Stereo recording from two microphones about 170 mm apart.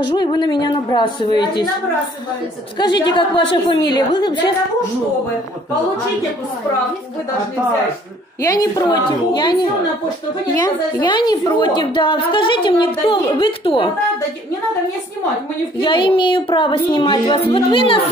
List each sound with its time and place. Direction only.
0.0 s a woman's voice: 25° left (ahead or behind)
2.8 s a woman's voice: 25° left (ahead or behind)
8.5 s a woman's voice: 25° left (ahead or behind)
15.8 s a woman's voice: 30° left (ahead or behind)